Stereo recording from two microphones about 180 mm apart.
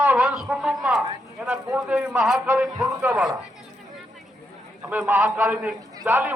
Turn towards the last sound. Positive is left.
turn(degrees=-10)  # may be behind; listen again after turning